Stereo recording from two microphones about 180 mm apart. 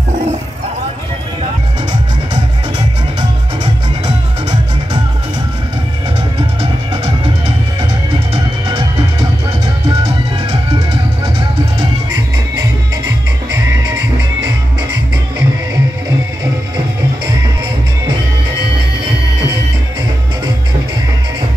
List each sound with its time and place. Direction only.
12.5 s music: 20° right (ahead or behind)